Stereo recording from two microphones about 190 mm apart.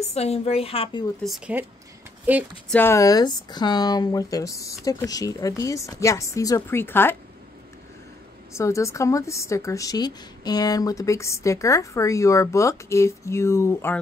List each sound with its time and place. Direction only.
0.0 s a woman's voice: 35° left (ahead or behind)
1.2 s speech: 5° right (ahead or behind)
2.7 s speech: 10° left (ahead or behind)
8.5 s speech: 15° left (ahead or behind)